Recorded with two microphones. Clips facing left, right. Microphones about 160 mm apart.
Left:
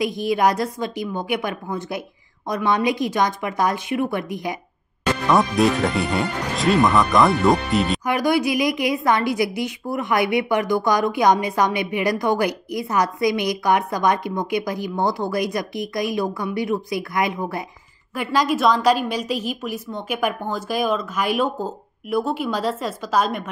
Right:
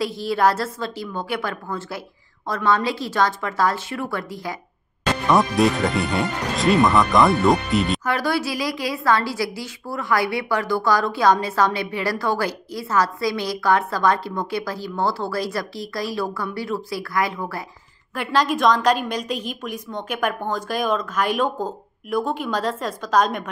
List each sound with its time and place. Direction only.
0.0 s a woman's voice: 15° left (ahead or behind)
5.3 s speech: centre (ahead or behind)
8.0 s a woman's voice: 15° left (ahead or behind)
18.1 s a woman's voice: 10° left (ahead or behind)